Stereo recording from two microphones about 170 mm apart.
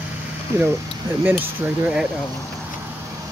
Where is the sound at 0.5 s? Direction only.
15° right (ahead or behind).